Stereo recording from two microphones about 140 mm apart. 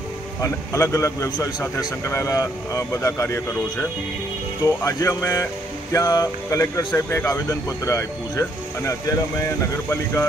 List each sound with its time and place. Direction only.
0.4 s speech: 20° left (ahead or behind)
4.6 s speech: 20° left (ahead or behind)